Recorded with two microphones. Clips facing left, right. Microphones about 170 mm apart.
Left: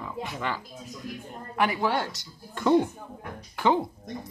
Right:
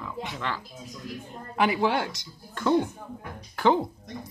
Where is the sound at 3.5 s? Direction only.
Centre (ahead or behind).